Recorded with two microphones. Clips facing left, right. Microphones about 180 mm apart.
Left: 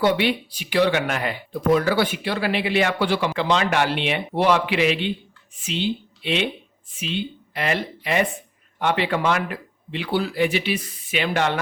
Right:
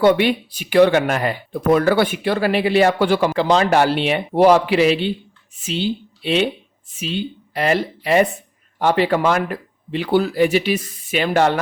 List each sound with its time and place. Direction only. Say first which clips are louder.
0.0 s speech: right 5 dB; 50° right (ahead or behind)